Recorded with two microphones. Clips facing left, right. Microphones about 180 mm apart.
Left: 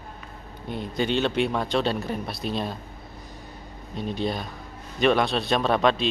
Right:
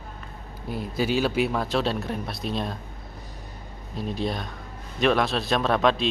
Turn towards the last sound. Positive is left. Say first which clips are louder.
# even
turn(degrees=0)  # may be behind; listen again after turning